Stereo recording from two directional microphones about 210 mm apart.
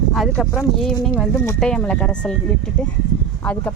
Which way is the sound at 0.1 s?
Centre (ahead or behind).